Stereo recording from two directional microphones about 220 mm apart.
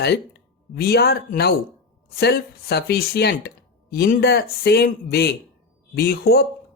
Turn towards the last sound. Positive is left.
turn(degrees=45)  # may be behind; listen again after turning